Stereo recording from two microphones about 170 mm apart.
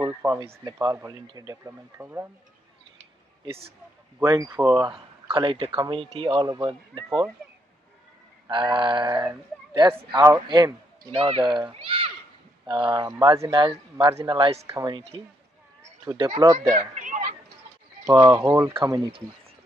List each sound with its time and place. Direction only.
0.0 s speech: 15° right (ahead or behind)
4.2 s speech: 20° right (ahead or behind)
8.5 s speech: 30° right (ahead or behind)
11.8 s a sound: 35° right (ahead or behind)
12.6 s speech: 30° right (ahead or behind)
16.7 s children playing: 50° right (ahead or behind)
18.2 s speech: 15° right (ahead or behind)
18.7 s speech: 25° right (ahead or behind)